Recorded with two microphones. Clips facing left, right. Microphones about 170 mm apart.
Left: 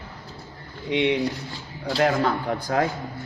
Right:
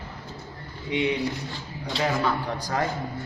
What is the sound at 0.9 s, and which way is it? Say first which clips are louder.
Speech: left 3 dB; 75° left (ahead or behind).